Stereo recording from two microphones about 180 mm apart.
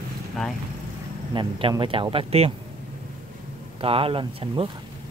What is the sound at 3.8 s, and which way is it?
Speech, 30° right (ahead or behind).